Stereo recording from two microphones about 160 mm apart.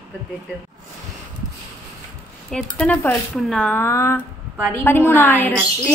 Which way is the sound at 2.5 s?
5° left (ahead or behind).